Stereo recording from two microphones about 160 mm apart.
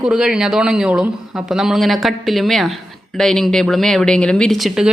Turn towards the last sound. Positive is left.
turn(degrees=0)  # may be behind; listen again after turning